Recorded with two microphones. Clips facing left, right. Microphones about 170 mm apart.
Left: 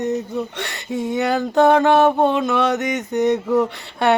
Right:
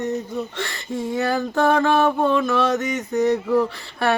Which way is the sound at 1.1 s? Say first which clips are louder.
Left 4 dB; 20° left (ahead or behind).